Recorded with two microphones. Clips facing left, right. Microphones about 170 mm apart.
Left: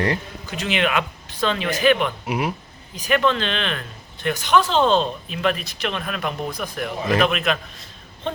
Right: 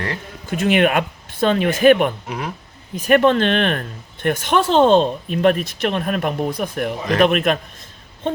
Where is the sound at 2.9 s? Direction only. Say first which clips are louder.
Right 6 dB; 50° right (ahead or behind).